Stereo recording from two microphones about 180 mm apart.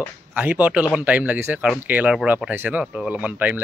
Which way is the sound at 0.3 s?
10° right (ahead or behind).